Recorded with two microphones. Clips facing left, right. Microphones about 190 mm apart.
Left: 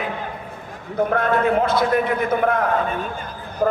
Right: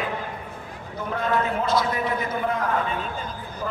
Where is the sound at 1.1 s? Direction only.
60° left (ahead or behind).